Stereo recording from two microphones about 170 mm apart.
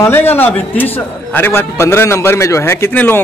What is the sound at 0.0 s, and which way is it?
A man's voice, 10° left (ahead or behind).